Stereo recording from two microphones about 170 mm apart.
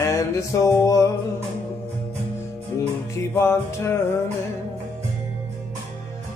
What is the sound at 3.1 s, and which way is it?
Music, 15° left (ahead or behind).